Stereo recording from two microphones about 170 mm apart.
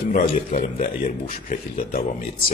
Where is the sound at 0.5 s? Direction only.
50° left (ahead or behind).